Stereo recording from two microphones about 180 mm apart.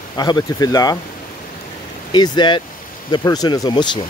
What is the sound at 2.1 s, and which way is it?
Speech, 25° left (ahead or behind).